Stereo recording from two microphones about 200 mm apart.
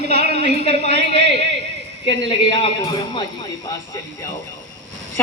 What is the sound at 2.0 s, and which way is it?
Speech, 25° left (ahead or behind).